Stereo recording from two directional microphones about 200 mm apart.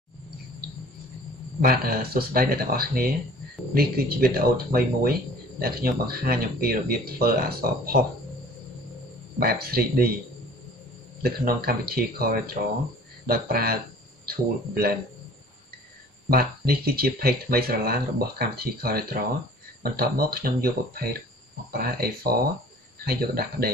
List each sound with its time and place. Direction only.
1.6 s speech: 45° right (ahead or behind)
9.4 s speech: 50° right (ahead or behind)
11.2 s speech: 50° right (ahead or behind)
16.3 s speech: 50° right (ahead or behind)